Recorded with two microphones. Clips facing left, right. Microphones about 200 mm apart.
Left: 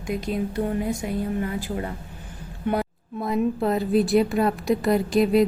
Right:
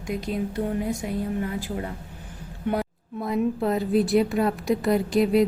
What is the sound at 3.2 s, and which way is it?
A woman's voice, 35° left (ahead or behind).